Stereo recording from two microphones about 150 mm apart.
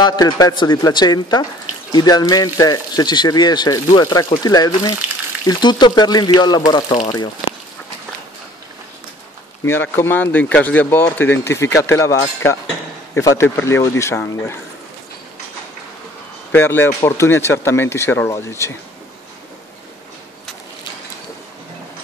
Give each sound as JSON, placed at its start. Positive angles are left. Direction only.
{"t": 0.0, "sound": "speech", "side_deg": 25}
{"t": 9.7, "sound": "speech", "side_deg": 15}
{"t": 16.5, "sound": "speech", "side_deg": 15}